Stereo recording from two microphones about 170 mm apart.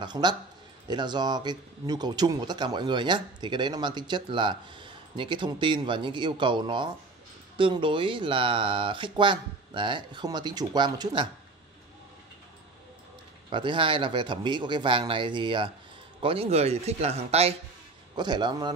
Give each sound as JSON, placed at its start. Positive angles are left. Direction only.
{"t": 0.0, "sound": "speech", "side_deg": -25}
{"t": 13.5, "sound": "speech", "side_deg": -30}
{"t": 18.1, "sound": "speech", "side_deg": -25}